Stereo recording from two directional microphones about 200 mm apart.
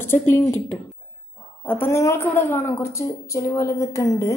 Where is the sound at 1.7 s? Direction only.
10° left (ahead or behind).